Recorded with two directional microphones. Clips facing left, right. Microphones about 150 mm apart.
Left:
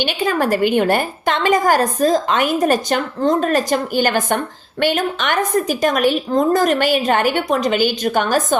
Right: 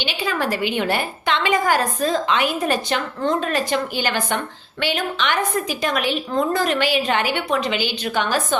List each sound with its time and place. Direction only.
0.0 s a woman's voice: 50° left (ahead or behind)